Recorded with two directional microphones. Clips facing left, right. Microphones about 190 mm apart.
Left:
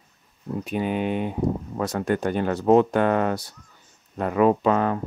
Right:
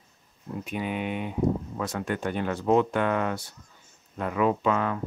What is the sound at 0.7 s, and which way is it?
Speech, 35° left (ahead or behind).